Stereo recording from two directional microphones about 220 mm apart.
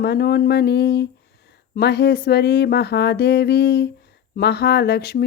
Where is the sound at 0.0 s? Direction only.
45° left (ahead or behind).